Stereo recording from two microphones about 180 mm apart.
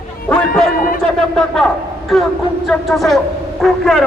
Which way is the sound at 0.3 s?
5° left (ahead or behind).